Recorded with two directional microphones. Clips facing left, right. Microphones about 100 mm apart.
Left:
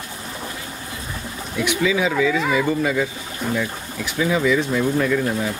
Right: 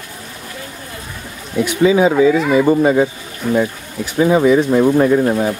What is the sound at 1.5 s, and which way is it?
Speech, 35° right (ahead or behind).